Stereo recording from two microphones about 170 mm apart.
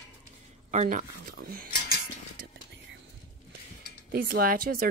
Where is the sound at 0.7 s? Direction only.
45° right (ahead or behind).